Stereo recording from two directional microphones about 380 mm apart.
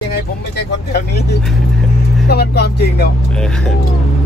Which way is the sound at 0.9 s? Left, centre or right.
Left.